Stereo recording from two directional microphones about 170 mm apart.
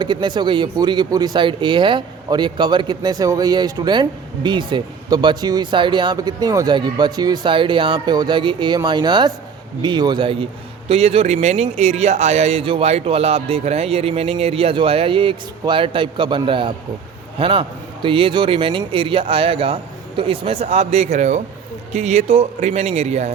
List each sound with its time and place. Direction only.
0.0 s a man's voice: 25° right (ahead or behind)